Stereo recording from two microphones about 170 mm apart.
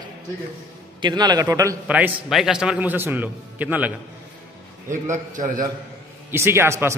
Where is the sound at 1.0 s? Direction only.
25° right (ahead or behind).